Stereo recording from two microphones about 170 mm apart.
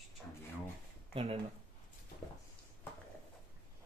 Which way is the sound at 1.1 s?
30° right (ahead or behind).